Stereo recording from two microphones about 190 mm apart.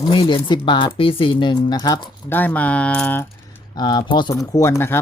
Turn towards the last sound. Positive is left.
turn(degrees=15)  # may be behind; listen again after turning